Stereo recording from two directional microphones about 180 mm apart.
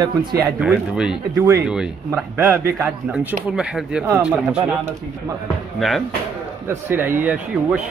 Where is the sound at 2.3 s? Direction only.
10° right (ahead or behind).